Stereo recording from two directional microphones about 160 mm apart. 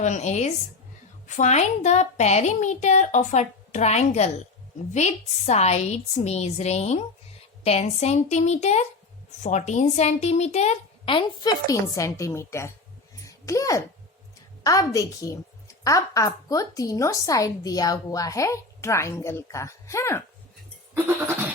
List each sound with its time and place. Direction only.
0.0 s a woman's voice: 45° left (ahead or behind); by 12.7 s 15° left (ahead or behind)
13.2 s a sound: 20° left (ahead or behind)
14.6 s a woman's voice: 20° left (ahead or behind)